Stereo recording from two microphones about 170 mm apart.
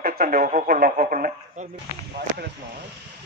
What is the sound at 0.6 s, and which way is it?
Speech, 55° right (ahead or behind).